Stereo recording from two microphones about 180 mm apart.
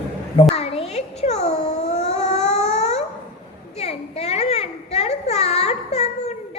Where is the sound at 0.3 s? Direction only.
35° left (ahead or behind).